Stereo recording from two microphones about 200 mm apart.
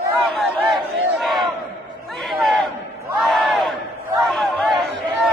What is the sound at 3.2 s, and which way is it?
Battle cry, centre (ahead or behind).